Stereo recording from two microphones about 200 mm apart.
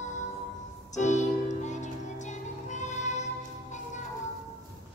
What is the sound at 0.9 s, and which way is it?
Music, 35° left (ahead or behind).